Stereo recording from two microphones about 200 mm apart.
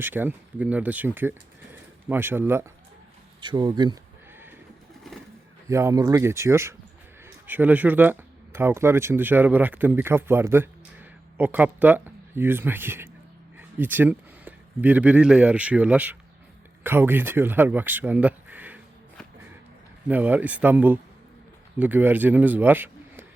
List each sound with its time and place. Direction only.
0.0 s speech: 10° right (ahead or behind)
3.4 s speech: 20° right (ahead or behind)
5.6 s speech: 15° right (ahead or behind)
20.1 s a man's voice: 10° right (ahead or behind)